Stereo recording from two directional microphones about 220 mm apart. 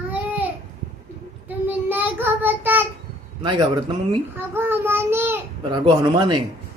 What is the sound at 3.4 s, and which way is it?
Speech, 20° right (ahead or behind).